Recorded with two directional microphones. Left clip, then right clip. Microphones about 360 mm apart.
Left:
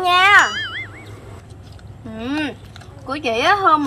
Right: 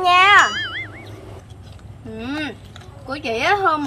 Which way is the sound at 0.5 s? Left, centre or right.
Centre.